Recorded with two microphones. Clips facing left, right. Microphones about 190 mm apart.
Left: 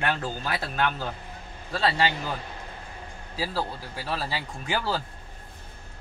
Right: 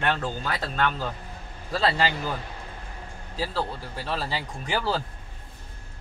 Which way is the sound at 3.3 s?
10° left (ahead or behind).